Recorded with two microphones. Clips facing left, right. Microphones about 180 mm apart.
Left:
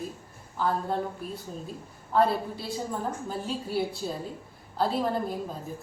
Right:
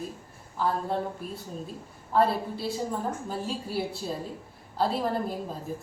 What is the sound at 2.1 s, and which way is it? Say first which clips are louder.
A woman's voice: even; centre (ahead or behind).